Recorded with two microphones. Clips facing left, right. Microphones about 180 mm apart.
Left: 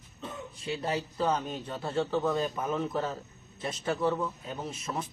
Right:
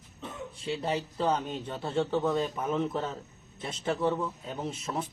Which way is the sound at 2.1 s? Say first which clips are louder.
Right 1 dB; 25° right (ahead or behind).